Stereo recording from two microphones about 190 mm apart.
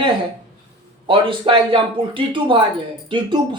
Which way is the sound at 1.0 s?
25° right (ahead or behind).